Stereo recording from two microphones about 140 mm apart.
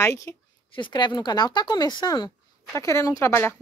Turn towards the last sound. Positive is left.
turn(degrees=20)  # may be behind; listen again after turning